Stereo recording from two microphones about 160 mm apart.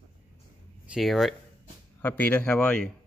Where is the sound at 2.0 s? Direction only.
10° left (ahead or behind).